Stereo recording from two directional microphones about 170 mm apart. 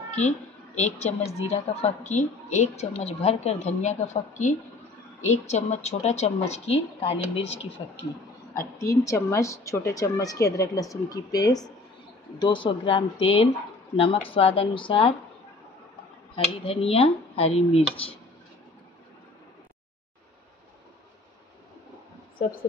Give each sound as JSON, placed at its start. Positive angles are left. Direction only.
{"t": 0.7, "sound": "a woman's voice", "side_deg": 40}
{"t": 7.4, "sound": "speech", "side_deg": 90}
{"t": 8.7, "sound": "a woman's voice", "side_deg": 20}
{"t": 16.5, "sound": "a woman's voice", "side_deg": 35}